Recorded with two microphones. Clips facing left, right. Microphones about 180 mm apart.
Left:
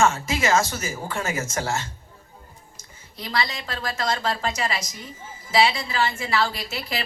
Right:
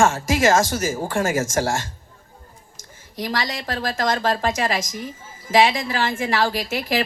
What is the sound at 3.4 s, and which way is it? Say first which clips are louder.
Speech: right 4 dB; 45° right (ahead or behind).